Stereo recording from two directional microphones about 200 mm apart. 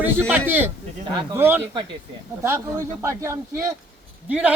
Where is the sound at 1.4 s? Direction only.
10° right (ahead or behind).